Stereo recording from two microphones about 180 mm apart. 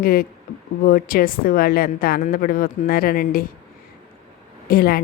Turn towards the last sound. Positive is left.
turn(degrees=55)  # may be behind; listen again after turning